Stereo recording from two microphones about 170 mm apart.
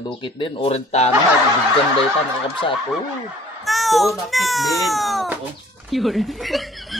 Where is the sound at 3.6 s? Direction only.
Centre (ahead or behind).